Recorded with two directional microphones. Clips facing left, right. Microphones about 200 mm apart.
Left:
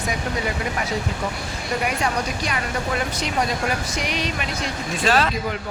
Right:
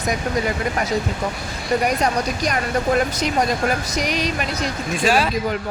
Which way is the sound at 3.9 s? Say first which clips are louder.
Right 4 dB; 40° right (ahead or behind).